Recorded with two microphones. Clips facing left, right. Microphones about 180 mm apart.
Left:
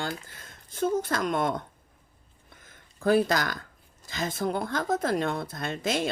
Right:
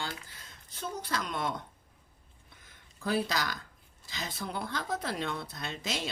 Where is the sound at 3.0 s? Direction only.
50° left (ahead or behind).